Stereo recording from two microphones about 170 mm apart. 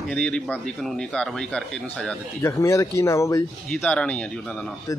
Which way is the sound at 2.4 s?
15° left (ahead or behind).